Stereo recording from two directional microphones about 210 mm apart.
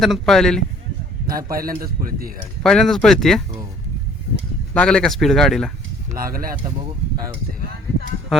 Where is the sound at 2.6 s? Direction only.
Centre (ahead or behind).